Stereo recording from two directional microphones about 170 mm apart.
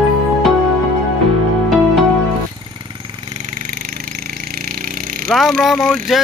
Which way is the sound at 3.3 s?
45° right (ahead or behind).